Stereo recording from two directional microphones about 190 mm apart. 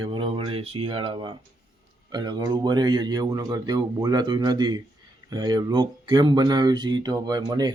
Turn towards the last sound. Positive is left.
turn(degrees=-20)  # may be behind; listen again after turning